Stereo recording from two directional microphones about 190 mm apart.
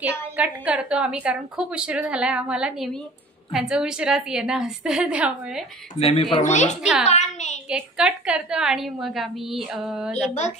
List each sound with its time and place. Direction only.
0.0 s a woman's voice: 5° right (ahead or behind)
5.9 s a woman's voice: 30° left (ahead or behind)
6.8 s a woman's voice: 5° right (ahead or behind)
7.1 s a woman's voice: 40° left (ahead or behind)
7.7 s a woman's voice: 5° right (ahead or behind)
10.1 s a woman's voice: 35° left (ahead or behind)